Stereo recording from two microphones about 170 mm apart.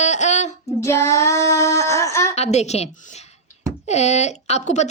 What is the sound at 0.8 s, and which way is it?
Child singing, 15° left (ahead or behind).